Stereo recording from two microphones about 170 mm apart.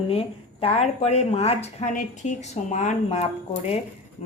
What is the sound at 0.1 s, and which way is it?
A woman's voice, 35° left (ahead or behind).